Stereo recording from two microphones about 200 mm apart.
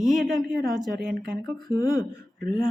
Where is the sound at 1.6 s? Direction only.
20° left (ahead or behind).